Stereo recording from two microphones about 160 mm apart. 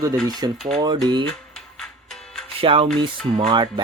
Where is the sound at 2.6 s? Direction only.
35° right (ahead or behind).